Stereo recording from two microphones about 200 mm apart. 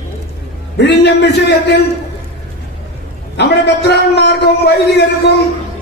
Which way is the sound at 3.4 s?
60° left (ahead or behind).